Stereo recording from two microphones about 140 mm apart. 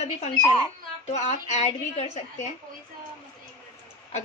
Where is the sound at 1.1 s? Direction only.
55° left (ahead or behind).